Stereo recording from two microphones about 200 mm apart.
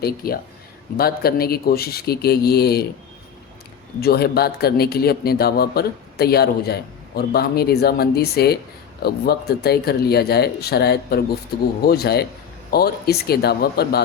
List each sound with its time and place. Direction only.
0.0 s a man's voice: 50° left (ahead or behind)
4.0 s a man's voice: 50° left (ahead or behind)